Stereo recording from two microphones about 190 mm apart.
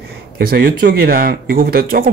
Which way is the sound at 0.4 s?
50° right (ahead or behind).